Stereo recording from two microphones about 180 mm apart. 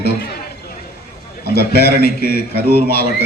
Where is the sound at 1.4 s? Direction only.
60° left (ahead or behind).